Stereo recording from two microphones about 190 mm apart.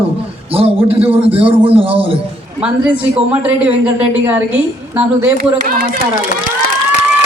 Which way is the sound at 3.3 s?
5° right (ahead or behind).